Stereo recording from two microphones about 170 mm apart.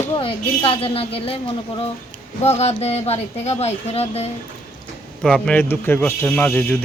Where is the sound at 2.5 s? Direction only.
40° left (ahead or behind).